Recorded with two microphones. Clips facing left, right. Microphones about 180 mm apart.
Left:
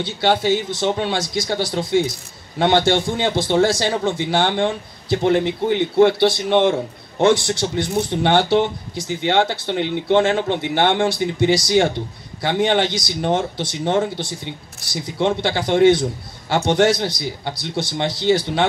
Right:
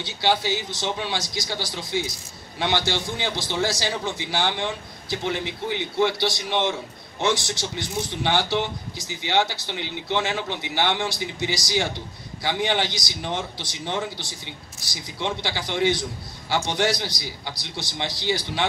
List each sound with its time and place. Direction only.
0.0 s a man's voice: 55° left (ahead or behind)